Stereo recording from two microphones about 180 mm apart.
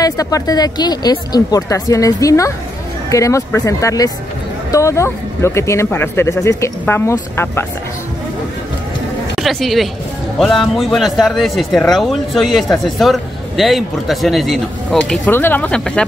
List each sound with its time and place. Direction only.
0.0 s a woman's voice: 20° left (ahead or behind)
9.4 s speech: centre (ahead or behind)